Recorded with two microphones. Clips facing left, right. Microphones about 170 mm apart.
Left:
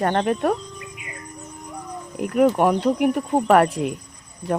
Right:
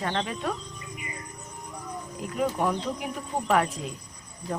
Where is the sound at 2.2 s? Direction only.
65° left (ahead or behind).